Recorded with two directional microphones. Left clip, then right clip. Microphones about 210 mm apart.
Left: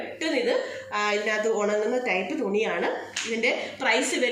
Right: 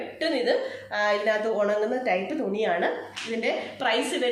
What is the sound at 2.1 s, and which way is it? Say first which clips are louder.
Speech: even; 35° right (ahead or behind).